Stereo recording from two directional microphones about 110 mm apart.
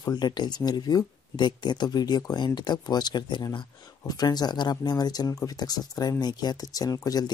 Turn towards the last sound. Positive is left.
turn(degrees=35)  # may be behind; listen again after turning